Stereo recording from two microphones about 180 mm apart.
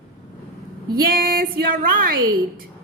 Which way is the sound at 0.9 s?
55° right (ahead or behind).